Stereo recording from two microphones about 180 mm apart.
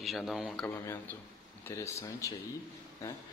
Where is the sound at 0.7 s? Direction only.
10° left (ahead or behind).